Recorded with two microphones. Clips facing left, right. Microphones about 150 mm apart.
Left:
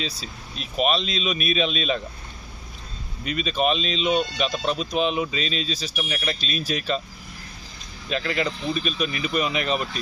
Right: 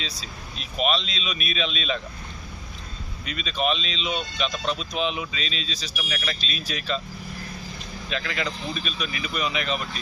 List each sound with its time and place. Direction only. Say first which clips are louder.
0.8 s speech: left 3 dB; 45° left (ahead or behind)
3.2 s speech: left 3 dB; 40° left (ahead or behind)
6.0 s speech: left 2 dB; 25° left (ahead or behind)
6.4 s speech: left 5 dB; 45° left (ahead or behind)
8.1 s speech: left 4 dB; 35° left (ahead or behind)